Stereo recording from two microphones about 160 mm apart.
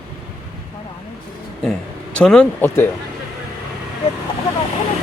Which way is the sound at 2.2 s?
5° left (ahead or behind).